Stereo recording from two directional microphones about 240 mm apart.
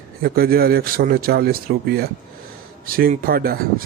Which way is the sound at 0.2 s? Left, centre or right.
Right.